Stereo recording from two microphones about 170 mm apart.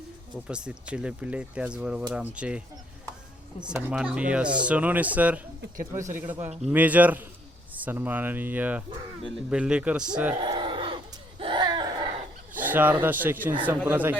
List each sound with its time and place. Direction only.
0.4 s speech: 5° right (ahead or behind)
3.6 s speech: 10° right (ahead or behind)
10.4 s a sound: 25° right (ahead or behind)
12.5 s speech: 10° right (ahead or behind)